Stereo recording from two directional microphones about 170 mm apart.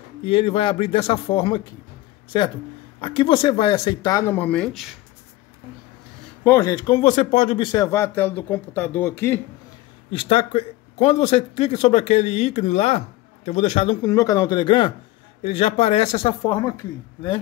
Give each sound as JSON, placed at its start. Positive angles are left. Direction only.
{"t": 0.2, "sound": "speech", "side_deg": 35}
{"t": 3.0, "sound": "speech", "side_deg": 30}
{"t": 4.4, "sound": "speech", "side_deg": 5}
{"t": 6.4, "sound": "speech", "side_deg": 15}
{"t": 7.0, "sound": "speech", "side_deg": 40}
{"t": 10.1, "sound": "speech", "side_deg": 30}
{"t": 14.0, "sound": "speech", "side_deg": 20}